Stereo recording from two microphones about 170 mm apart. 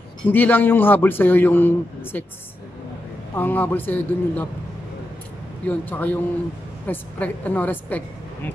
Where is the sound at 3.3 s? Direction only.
10° left (ahead or behind).